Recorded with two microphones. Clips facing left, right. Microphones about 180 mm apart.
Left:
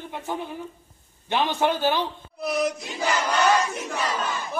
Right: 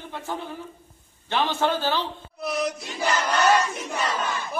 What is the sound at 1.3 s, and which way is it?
Speech, 15° left (ahead or behind).